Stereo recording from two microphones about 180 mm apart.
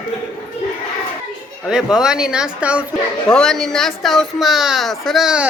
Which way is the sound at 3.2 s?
5° left (ahead or behind).